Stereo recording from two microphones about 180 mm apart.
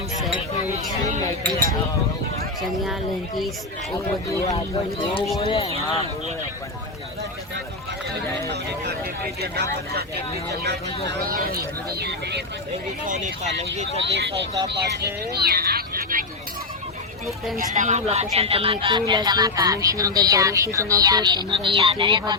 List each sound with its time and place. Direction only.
4.4 s speech: 30° left (ahead or behind)
8.4 s speech: 65° right (ahead or behind)
11.4 s speech: 60° right (ahead or behind)
13.1 s speech: 45° right (ahead or behind)
14.0 s speech: 75° right (ahead or behind); by 16.2 s 50° right (ahead or behind)
17.2 s speech: centre (ahead or behind)
17.7 s speech: 40° right (ahead or behind); by 22.4 s 25° right (ahead or behind)